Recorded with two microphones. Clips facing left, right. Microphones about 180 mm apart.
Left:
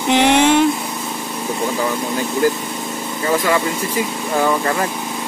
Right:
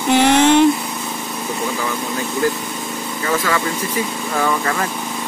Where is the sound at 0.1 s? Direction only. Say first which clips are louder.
Right 1 dB; 15° left (ahead or behind).